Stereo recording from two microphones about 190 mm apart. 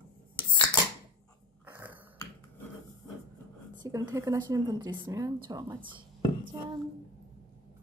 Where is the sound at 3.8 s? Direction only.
15° right (ahead or behind).